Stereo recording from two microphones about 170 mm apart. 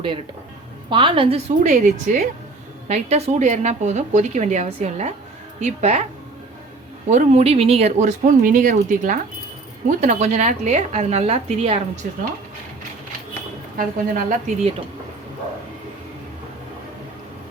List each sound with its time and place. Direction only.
0.9 s a woman's voice: 30° right (ahead or behind)
7.1 s a woman's voice: 40° right (ahead or behind)
12.0 s speech: 60° right (ahead or behind)
13.7 s a woman's voice: 50° right (ahead or behind)